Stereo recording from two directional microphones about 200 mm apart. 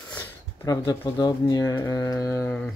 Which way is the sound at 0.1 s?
10° left (ahead or behind).